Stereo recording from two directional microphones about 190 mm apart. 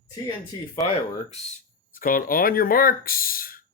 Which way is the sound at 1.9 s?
50° left (ahead or behind).